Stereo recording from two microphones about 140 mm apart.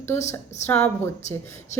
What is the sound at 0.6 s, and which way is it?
Speech, 10° left (ahead or behind).